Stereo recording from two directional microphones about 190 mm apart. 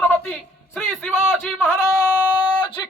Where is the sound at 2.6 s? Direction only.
25° left (ahead or behind).